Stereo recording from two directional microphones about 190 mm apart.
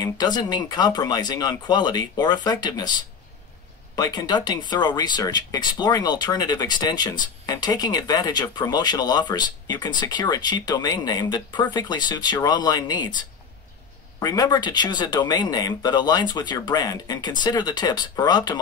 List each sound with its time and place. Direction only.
0.0 s speech: 20° left (ahead or behind)